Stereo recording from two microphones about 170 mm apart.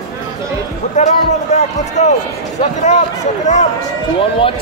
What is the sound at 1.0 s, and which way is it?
A man's voice, 45° left (ahead or behind).